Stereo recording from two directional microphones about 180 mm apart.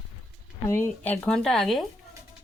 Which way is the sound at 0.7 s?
10° left (ahead or behind).